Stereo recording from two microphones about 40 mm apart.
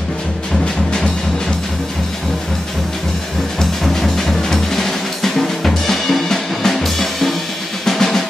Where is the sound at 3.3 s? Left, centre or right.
Centre.